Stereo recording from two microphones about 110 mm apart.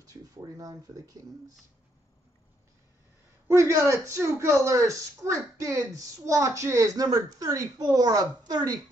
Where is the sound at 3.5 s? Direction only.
25° right (ahead or behind).